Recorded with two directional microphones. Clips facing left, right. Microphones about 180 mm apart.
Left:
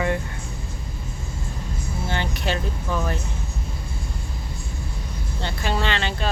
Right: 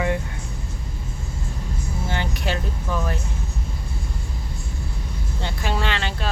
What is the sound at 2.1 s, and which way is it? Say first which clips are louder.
Speech: left 1 dB; 10° right (ahead or behind).